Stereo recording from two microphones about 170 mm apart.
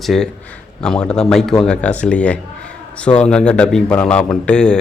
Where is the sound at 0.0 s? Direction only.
Centre (ahead or behind).